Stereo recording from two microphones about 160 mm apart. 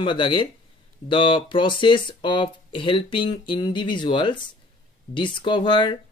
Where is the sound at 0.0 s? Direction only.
30° left (ahead or behind).